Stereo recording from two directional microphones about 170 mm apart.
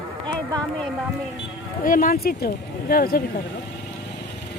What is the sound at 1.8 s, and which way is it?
Speech, 55° left (ahead or behind).